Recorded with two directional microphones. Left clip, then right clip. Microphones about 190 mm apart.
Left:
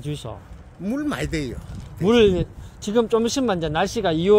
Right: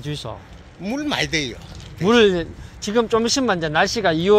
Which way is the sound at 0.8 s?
50° left (ahead or behind).